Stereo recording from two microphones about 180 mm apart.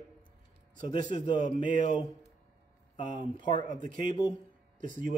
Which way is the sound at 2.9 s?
25° left (ahead or behind).